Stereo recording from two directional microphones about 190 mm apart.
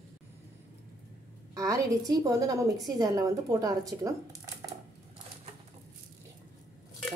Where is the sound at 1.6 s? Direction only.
15° right (ahead or behind).